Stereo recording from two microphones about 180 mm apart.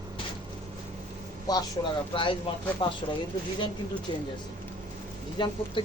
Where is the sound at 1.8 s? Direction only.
20° left (ahead or behind).